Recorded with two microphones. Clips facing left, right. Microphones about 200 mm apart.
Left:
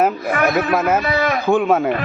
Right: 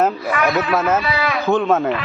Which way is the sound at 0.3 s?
50° left (ahead or behind).